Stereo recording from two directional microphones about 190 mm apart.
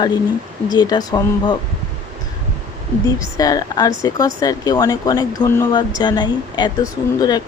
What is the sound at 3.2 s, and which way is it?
Speech, 20° left (ahead or behind).